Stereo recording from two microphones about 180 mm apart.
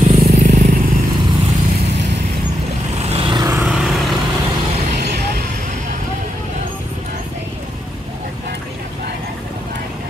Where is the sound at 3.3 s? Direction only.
20° right (ahead or behind).